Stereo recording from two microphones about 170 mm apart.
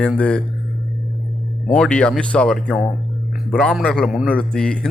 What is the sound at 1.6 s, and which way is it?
A man's voice, 5° left (ahead or behind).